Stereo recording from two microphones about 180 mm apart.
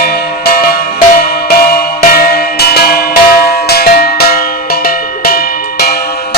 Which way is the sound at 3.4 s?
60° left (ahead or behind).